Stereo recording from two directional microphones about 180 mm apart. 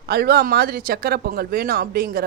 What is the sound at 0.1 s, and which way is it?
Speech, 60° right (ahead or behind).